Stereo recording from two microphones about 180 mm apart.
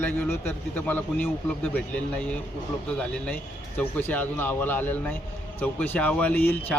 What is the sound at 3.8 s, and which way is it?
Speech, 10° left (ahead or behind).